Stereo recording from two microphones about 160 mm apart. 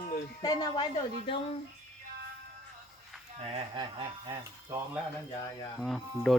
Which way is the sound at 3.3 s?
40° right (ahead or behind).